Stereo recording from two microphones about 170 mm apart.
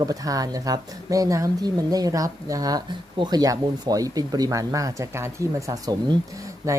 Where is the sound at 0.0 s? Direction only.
20° right (ahead or behind).